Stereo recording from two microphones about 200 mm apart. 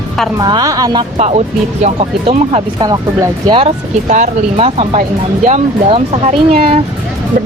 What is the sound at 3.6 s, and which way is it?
Speech, 35° right (ahead or behind).